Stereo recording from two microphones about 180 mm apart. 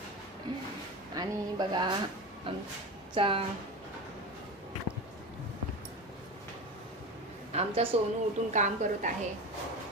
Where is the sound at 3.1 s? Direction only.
30° right (ahead or behind).